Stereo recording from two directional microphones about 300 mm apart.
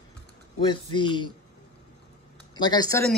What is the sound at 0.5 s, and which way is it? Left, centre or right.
Speech, centre.